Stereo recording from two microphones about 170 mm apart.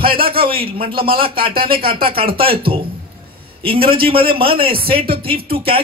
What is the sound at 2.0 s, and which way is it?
Speech, 30° right (ahead or behind).